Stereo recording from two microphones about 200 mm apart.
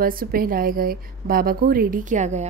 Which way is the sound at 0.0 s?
45° right (ahead or behind).